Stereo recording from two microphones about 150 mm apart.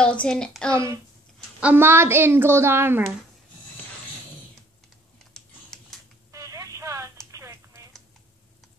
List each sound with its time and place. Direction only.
0.0 s speech: 5° left (ahead or behind)
0.7 s a child's voice: 20° right (ahead or behind)
5.2 s typing: centre (ahead or behind)
6.3 s telephone: 20° right (ahead or behind)
7.2 s a sound: 20° right (ahead or behind)